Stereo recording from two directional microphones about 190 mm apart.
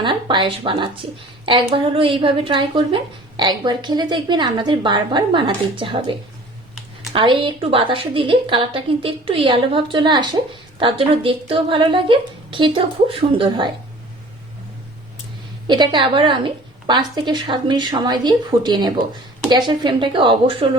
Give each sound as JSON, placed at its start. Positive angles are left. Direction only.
{"t": 0.0, "sound": "a woman's voice", "side_deg": -25}
{"t": 15.6, "sound": "a woman's voice", "side_deg": -25}